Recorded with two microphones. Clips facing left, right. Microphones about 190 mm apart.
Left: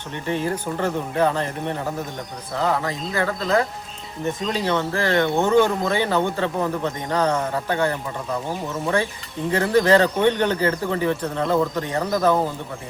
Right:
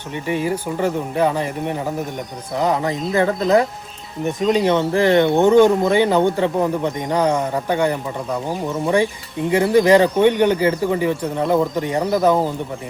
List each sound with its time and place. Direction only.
0.1 s speech: 10° right (ahead or behind)
9.5 s speech: 15° right (ahead or behind)